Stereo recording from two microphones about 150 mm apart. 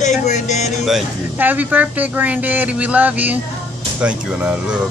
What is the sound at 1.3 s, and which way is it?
Speech, 10° right (ahead or behind).